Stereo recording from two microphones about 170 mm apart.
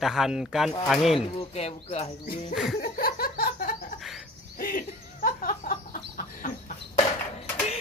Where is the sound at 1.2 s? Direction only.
35° left (ahead or behind).